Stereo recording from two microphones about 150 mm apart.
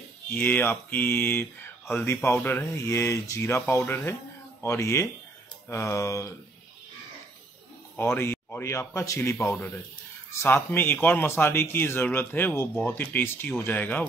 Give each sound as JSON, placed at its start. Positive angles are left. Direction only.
{"t": 0.3, "sound": "speech", "side_deg": 15}
{"t": 8.0, "sound": "speech", "side_deg": 15}